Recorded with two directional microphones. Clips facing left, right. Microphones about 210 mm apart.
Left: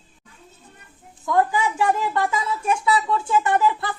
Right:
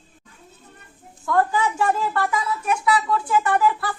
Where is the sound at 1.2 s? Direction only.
15° left (ahead or behind).